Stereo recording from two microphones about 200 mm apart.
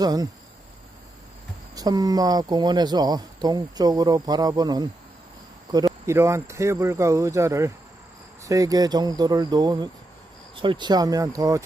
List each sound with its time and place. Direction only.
0.0 s speech: 20° right (ahead or behind)
1.7 s speech: 20° right (ahead or behind)